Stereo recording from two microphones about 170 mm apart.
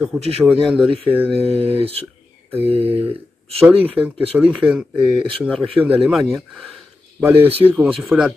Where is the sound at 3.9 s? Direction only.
5° right (ahead or behind).